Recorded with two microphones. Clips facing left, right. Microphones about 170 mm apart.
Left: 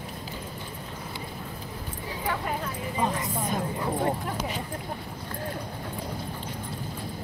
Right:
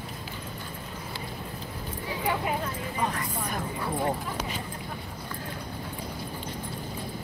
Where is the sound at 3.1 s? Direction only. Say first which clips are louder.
Left 3 dB; 20° left (ahead or behind).